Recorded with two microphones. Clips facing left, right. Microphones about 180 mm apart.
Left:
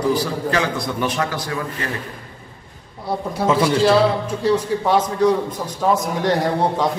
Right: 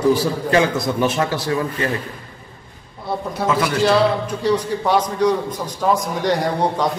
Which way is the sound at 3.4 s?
30° left (ahead or behind).